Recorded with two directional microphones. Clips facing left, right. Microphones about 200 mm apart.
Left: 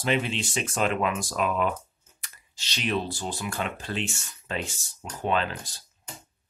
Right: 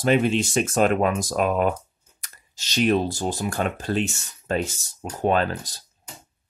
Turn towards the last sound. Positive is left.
turn(degrees=-45)  # may be behind; listen again after turning